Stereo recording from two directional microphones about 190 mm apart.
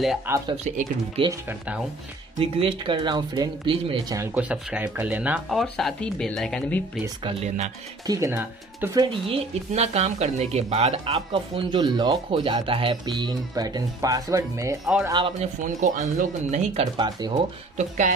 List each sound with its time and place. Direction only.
0.3 s speech: 10° right (ahead or behind)
0.7 s speech: 40° right (ahead or behind)
1.2 s speech: 30° right (ahead or behind)
4.2 s speech: 10° right (ahead or behind)
7.2 s speech: 35° right (ahead or behind)
8.1 s speech: 15° right (ahead or behind)
9.1 s speech: 30° right (ahead or behind)
15.6 s speech: 45° right (ahead or behind)
16.9 s speech: 25° right (ahead or behind)
17.7 s speech: 40° right (ahead or behind)